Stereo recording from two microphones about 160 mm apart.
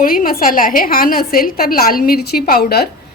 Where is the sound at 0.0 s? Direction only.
65° left (ahead or behind).